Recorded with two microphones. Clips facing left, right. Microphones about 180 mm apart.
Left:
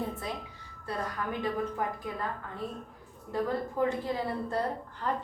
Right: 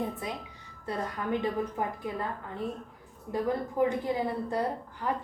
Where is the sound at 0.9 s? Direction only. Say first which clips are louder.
Right 3 dB; 20° right (ahead or behind).